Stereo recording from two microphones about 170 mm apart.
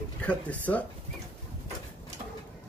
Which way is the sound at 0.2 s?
10° left (ahead or behind).